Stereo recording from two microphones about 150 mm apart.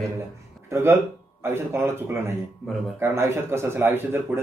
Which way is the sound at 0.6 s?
20° right (ahead or behind).